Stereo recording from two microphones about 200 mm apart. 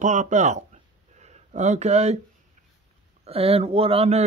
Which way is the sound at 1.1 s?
35° right (ahead or behind).